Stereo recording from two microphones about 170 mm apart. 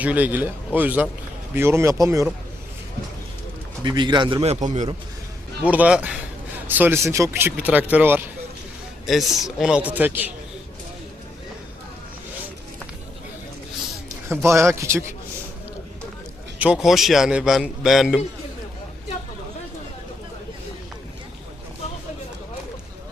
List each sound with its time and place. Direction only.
0.0 s a man's voice: 10° right (ahead or behind)
3.8 s a man's voice: 25° right (ahead or behind)
4.6 s a man's voice: 40° right (ahead or behind)
5.6 s a man's voice: 10° right (ahead or behind)
9.0 s a man's voice: centre (ahead or behind)
14.4 s a man's voice: 15° right (ahead or behind)
16.6 s a man's voice: 5° right (ahead or behind)